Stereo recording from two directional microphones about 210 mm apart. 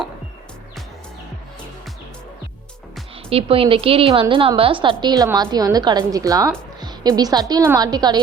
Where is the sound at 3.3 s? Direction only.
25° right (ahead or behind).